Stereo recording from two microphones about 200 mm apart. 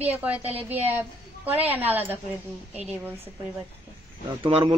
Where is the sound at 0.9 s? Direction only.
10° right (ahead or behind).